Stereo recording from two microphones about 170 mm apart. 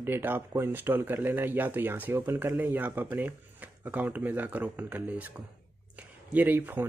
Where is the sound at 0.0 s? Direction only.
15° right (ahead or behind).